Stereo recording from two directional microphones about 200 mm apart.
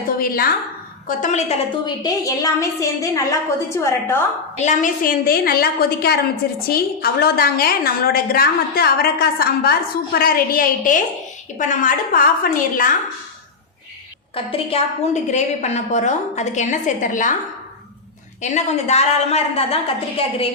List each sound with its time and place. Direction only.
1.0 s a woman's voice: 40° left (ahead or behind); by 4.2 s 15° left (ahead or behind)
4.5 s a woman's voice: 35° left (ahead or behind)
14.3 s a woman's voice: 30° left (ahead or behind)
18.4 s a woman's voice: 35° left (ahead or behind)